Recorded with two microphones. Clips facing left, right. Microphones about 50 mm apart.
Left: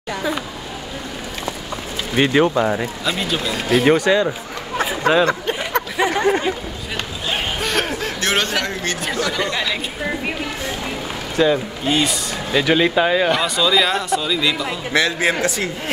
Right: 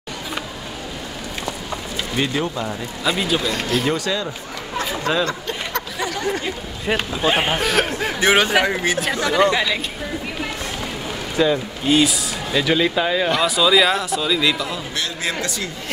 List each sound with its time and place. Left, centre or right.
2.1 s speech: left
3.1 s speech: centre
3.8 s speech: left
4.7 s a sound: left
5.9 s a sound: left
7.2 s speech: right
7.6 s speech: centre
8.0 s speech: centre
11.4 s speech: centre
12.5 s speech: centre
15.0 s speech: left